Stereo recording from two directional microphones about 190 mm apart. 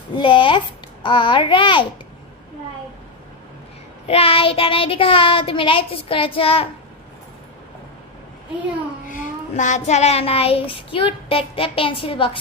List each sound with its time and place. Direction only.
0.1 s child singing: 25° left (ahead or behind)
4.1 s child singing: 30° left (ahead or behind)
9.0 s child singing: 40° left (ahead or behind)